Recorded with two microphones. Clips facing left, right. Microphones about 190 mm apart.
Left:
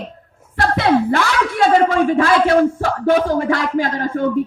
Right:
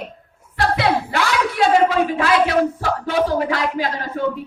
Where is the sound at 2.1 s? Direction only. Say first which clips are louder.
Left 3 dB; 50° left (ahead or behind).